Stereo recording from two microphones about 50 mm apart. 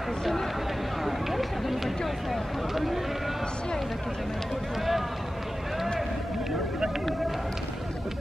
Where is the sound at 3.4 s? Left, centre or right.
Centre.